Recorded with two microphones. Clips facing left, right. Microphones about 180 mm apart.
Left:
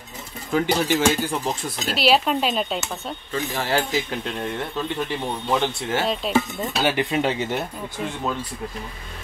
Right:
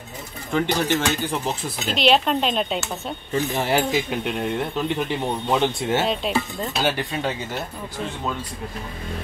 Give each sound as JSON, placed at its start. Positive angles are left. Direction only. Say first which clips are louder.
{"t": 0.5, "sound": "dishes", "louder": "left 1 dB", "side_deg": 5}
{"t": 1.2, "sound": "speech", "louder": "even", "side_deg": 0}
{"t": 3.5, "sound": "speech", "louder": "right 1 dB", "side_deg": -15}
{"t": 6.0, "sound": "dishes", "louder": "left 1 dB", "side_deg": 5}
{"t": 7.0, "sound": "speech", "louder": "left 4 dB", "side_deg": 20}